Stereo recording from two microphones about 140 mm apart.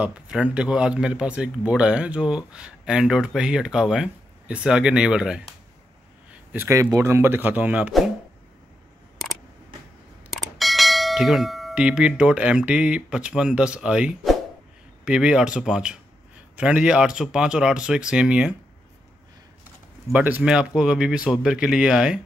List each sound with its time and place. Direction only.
0.0 s speech: 10° right (ahead or behind)
6.5 s speech: 20° right (ahead or behind)
10.3 s bell: centre (ahead or behind)
15.0 s speech: 5° right (ahead or behind)
20.1 s speech: 10° right (ahead or behind)